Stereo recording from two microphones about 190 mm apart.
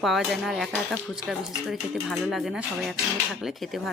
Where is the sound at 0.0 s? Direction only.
Centre (ahead or behind).